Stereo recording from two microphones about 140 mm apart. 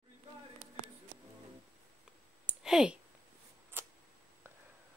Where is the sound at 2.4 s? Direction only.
5° right (ahead or behind).